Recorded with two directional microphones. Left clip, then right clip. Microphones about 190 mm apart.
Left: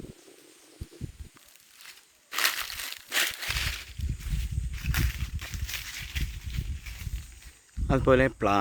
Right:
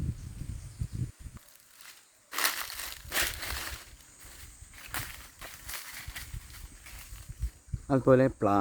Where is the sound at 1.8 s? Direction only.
30° right (ahead or behind).